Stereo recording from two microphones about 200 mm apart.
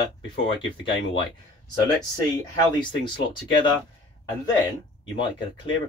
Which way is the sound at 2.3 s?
25° left (ahead or behind).